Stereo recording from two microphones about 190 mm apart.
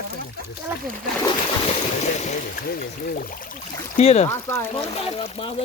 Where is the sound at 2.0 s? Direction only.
35° left (ahead or behind).